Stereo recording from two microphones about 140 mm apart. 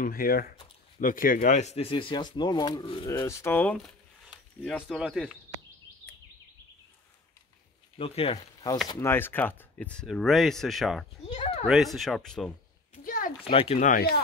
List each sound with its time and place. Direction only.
0.0 s speech: 90° left
1.6 s speech: 50° left (ahead or behind)
3.1 s speech: 20° left (ahead or behind)
3.7 s speech: centre (ahead or behind)
8.0 s speech: 40° left (ahead or behind)
8.8 s speech: 15° left (ahead or behind); by 11.1 s centre (ahead or behind)
11.3 s a sound: 45° left (ahead or behind)
11.6 s speech: centre (ahead or behind)
12.9 s a sound: 80° left
13.5 s speech: 40° left (ahead or behind)
13.7 s speech: 80° left